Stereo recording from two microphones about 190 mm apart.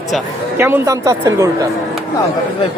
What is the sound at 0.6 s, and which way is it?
Speech, 15° right (ahead or behind).